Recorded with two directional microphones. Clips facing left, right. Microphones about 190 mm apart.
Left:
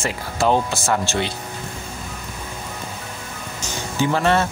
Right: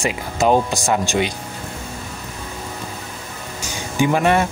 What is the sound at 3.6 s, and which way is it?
Music, 15° right (ahead or behind).